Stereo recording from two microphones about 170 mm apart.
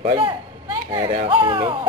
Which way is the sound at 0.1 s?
30° right (ahead or behind).